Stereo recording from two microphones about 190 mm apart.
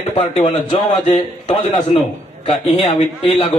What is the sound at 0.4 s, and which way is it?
A man's voice, 35° left (ahead or behind).